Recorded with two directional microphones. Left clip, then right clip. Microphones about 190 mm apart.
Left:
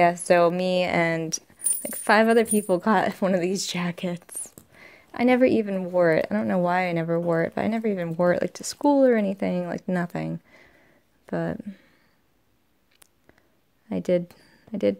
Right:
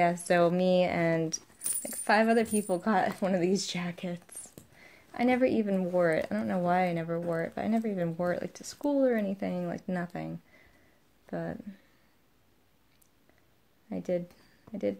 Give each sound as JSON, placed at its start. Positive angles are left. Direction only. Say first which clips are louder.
{"t": 0.0, "sound": "speech", "louder": "left 7 dB", "side_deg": 45}
{"t": 13.8, "sound": "speech", "louder": "left 8 dB", "side_deg": 55}